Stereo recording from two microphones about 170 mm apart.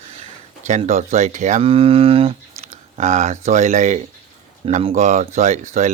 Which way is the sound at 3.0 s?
45° right (ahead or behind).